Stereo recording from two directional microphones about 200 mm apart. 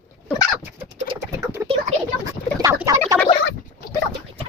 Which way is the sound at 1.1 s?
15° right (ahead or behind).